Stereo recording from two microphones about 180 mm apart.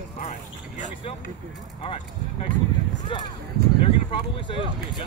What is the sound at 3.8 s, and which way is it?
Speech, 30° left (ahead or behind).